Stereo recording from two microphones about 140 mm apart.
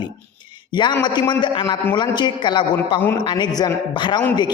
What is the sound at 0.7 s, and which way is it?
A man's voice, 30° left (ahead or behind).